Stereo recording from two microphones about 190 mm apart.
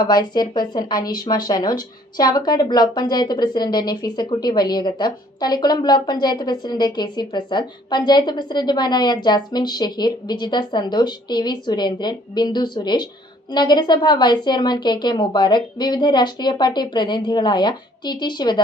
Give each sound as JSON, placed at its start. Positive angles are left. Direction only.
{"t": 0.0, "sound": "a woman's voice", "side_deg": 20}